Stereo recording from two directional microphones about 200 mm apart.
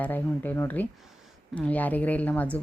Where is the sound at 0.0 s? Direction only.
10° left (ahead or behind).